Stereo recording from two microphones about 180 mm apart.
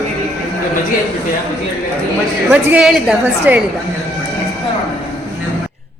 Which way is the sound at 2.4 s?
5° right (ahead or behind).